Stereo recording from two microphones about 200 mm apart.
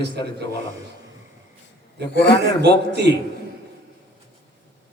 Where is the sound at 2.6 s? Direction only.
55° right (ahead or behind).